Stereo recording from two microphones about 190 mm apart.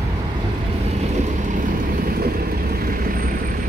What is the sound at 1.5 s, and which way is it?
Vehicle, 50° right (ahead or behind).